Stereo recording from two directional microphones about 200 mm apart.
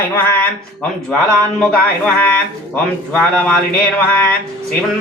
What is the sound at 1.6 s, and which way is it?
Speech, 5° left (ahead or behind).